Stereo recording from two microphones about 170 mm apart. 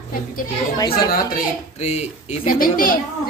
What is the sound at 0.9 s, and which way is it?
Speech, 60° left (ahead or behind).